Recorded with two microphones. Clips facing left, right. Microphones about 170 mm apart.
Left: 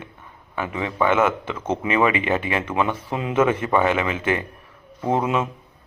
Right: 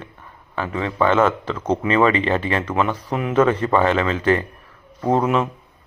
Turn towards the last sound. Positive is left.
turn(degrees=15)  # may be behind; listen again after turning